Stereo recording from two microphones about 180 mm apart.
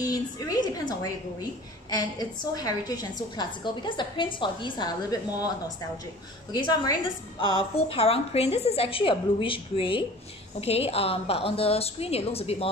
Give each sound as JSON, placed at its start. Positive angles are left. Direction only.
{"t": 0.0, "sound": "a woman's voice", "side_deg": 20}
{"t": 6.5, "sound": "a woman's voice", "side_deg": 25}